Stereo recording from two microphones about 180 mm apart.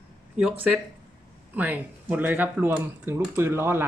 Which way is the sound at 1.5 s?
10° right (ahead or behind).